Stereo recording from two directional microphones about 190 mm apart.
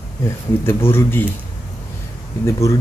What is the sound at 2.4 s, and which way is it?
Speech, 15° left (ahead or behind).